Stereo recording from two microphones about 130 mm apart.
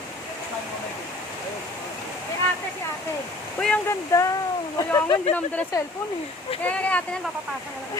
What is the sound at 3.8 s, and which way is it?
Speech, 25° left (ahead or behind).